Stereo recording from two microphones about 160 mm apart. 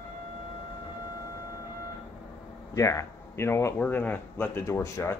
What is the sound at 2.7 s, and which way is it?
Speech, 20° left (ahead or behind).